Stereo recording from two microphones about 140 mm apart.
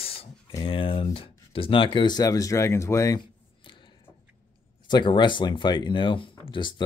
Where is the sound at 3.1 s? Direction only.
35° left (ahead or behind).